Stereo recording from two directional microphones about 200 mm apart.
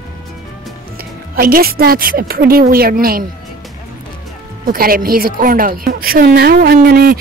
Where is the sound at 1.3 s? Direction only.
45° right (ahead or behind).